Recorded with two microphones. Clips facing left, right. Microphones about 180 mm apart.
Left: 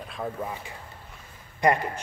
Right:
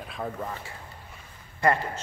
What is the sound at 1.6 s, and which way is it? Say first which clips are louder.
Speech: left 2 dB; 15° left (ahead or behind).